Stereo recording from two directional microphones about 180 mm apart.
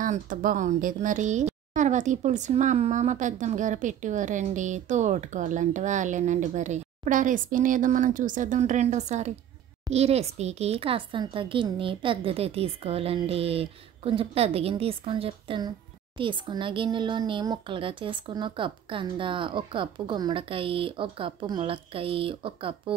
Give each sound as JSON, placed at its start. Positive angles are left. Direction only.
{"t": 0.0, "sound": "a woman's voice", "side_deg": -50}